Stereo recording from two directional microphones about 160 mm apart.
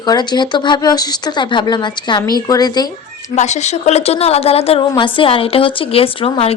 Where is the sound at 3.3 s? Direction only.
45° left (ahead or behind).